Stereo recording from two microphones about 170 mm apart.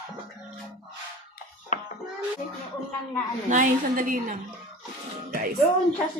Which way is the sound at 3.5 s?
50° right (ahead or behind).